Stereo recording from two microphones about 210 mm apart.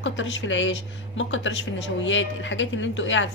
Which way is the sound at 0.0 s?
65° left (ahead or behind).